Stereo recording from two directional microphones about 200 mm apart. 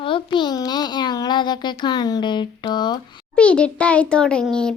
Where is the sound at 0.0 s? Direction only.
25° left (ahead or behind).